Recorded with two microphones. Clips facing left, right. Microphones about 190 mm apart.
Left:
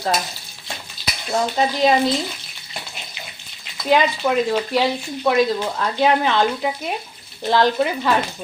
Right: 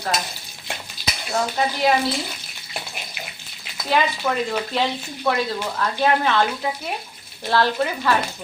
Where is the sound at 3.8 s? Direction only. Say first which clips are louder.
Left 4 dB; 15° left (ahead or behind).